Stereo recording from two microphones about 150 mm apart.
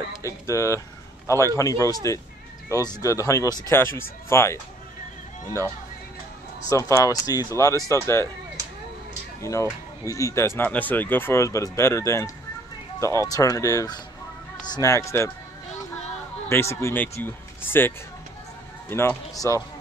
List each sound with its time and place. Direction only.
0.2 s speech: 20° left (ahead or behind)
6.7 s speech: 20° left (ahead or behind)
9.4 s speech: 20° left (ahead or behind)
16.4 s speech: 15° left (ahead or behind)